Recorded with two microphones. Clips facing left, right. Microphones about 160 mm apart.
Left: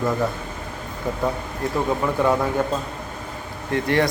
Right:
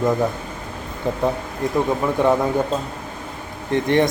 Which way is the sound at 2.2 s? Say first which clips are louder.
Right 3 dB; 20° right (ahead or behind).